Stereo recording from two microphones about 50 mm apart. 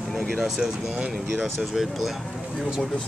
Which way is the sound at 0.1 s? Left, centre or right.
Centre.